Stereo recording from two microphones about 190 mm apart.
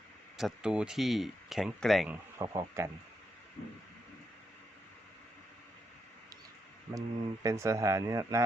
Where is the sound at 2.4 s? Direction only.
15° right (ahead or behind).